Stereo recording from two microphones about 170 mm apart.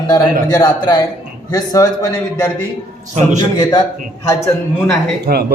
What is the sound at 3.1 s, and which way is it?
Speech, 45° right (ahead or behind).